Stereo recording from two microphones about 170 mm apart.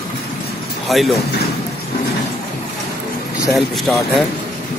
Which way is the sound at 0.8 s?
Centre (ahead or behind).